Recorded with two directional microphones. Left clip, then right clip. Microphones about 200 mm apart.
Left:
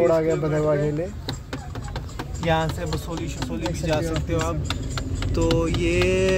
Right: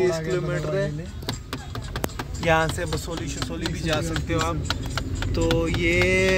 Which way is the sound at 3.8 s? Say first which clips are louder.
Left 1 dB; centre (ahead or behind).